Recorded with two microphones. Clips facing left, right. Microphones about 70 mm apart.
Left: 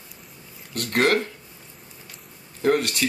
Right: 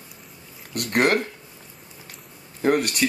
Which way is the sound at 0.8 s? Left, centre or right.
Centre.